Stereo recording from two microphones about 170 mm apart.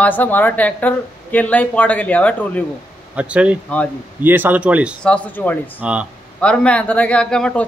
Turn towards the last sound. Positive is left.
turn(degrees=5)  # may be behind; listen again after turning